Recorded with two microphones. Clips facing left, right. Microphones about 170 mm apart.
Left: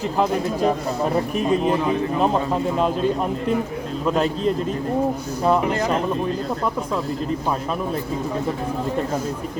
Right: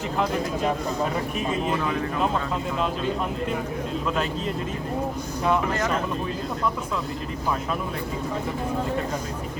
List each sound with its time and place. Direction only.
2.2 s speech: 40° left (ahead or behind)
4.0 s speech: 40° left (ahead or behind)
5.4 s speech: 35° left (ahead or behind)